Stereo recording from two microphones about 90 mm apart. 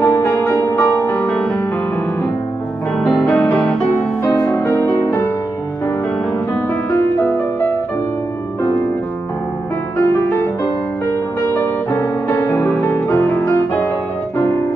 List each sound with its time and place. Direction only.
0.0 s music: 35° left (ahead or behind)
0.9 s music: 25° left (ahead or behind)
3.3 s music: 20° left (ahead or behind)
4.2 s music: 35° left (ahead or behind)
6.9 s music: 20° left (ahead or behind)
9.9 s music: 25° left (ahead or behind)
11.4 s music: 25° left (ahead or behind)